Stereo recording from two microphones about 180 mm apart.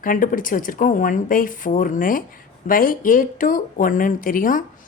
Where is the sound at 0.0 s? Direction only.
50° left (ahead or behind).